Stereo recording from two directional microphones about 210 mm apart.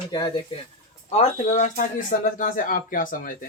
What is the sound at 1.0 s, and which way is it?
Speech, 35° left (ahead or behind).